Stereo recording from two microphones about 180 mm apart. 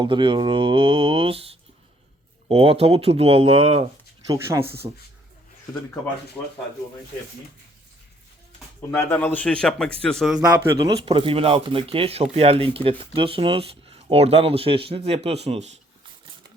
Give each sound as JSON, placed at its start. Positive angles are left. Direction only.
{"t": 0.0, "sound": "speech", "side_deg": -25}
{"t": 4.3, "sound": "speech", "side_deg": -15}
{"t": 4.6, "sound": "speech", "side_deg": -60}
{"t": 6.4, "sound": "speech", "side_deg": 15}
{"t": 8.9, "sound": "a man's voice", "side_deg": 10}
{"t": 10.8, "sound": "speech", "side_deg": -30}